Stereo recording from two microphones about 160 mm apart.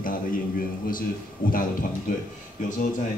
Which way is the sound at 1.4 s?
55° left (ahead or behind).